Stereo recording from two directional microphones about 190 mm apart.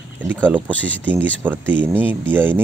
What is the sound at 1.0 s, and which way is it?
Speech, 10° right (ahead or behind).